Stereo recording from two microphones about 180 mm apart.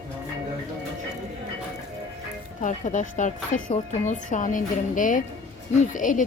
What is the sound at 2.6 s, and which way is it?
Speech, 45° left (ahead or behind).